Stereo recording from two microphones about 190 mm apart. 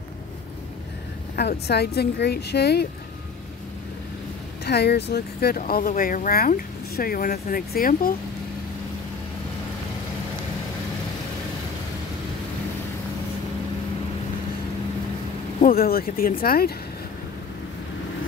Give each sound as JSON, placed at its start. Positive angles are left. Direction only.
{"t": 1.3, "sound": "speech", "side_deg": 55}
{"t": 4.6, "sound": "speech", "side_deg": 60}
{"t": 15.6, "sound": "speech", "side_deg": 50}